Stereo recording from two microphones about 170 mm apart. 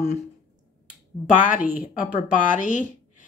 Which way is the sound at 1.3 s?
50° left (ahead or behind).